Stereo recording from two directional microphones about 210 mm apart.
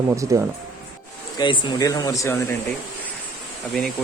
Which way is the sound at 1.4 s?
20° left (ahead or behind).